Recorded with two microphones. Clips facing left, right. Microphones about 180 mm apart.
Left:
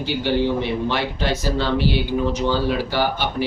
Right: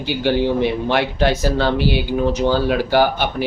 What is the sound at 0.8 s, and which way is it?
Speech, 55° right (ahead or behind).